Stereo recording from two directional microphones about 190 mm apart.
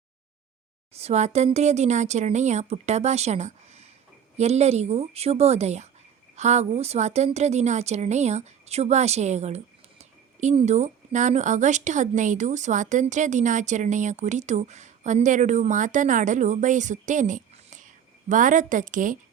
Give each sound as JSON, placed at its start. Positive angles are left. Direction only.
{"t": 0.9, "sound": "a woman's voice", "side_deg": -35}